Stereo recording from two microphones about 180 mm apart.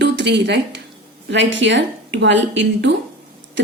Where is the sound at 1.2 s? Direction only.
85° right.